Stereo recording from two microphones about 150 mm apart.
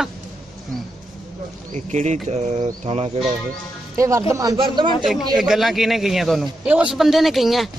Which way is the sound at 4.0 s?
20° right (ahead or behind).